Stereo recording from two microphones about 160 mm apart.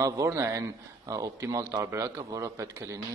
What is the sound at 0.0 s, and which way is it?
A man's voice, 20° right (ahead or behind).